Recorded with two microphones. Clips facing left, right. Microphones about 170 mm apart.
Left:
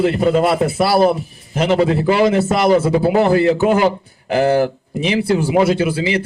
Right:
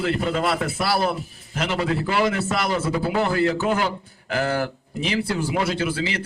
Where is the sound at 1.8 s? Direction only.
25° left (ahead or behind).